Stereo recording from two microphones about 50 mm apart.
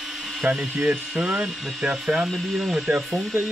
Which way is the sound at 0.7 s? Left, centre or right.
Centre.